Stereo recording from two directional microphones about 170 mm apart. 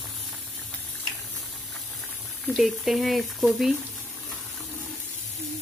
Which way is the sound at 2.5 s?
Centre (ahead or behind).